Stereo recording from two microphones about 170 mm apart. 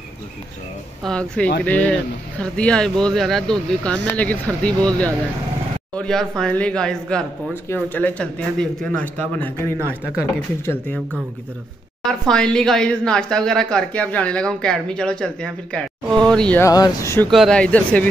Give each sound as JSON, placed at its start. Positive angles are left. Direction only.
{"t": 1.0, "sound": "speech", "side_deg": 5}
{"t": 9.8, "sound": "a woman's voice", "side_deg": -15}
{"t": 10.6, "sound": "speech", "side_deg": 15}
{"t": 12.0, "sound": "speech", "side_deg": 5}
{"t": 16.6, "sound": "speech", "side_deg": 20}
{"t": 17.3, "sound": "speech", "side_deg": 5}